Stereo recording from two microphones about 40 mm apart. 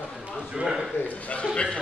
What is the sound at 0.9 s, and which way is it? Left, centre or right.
Speech, left.